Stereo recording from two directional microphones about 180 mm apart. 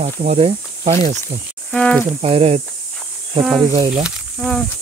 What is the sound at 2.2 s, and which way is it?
Speech, 35° right (ahead or behind).